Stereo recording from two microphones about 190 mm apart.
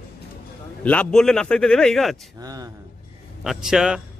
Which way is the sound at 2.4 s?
20° right (ahead or behind).